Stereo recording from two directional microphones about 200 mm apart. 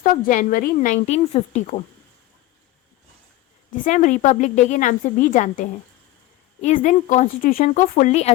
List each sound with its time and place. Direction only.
0.0 s a woman's voice: 40° left (ahead or behind)
3.7 s a woman's voice: 40° left (ahead or behind)